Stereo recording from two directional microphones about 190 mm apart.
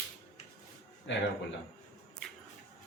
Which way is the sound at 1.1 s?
70° left (ahead or behind).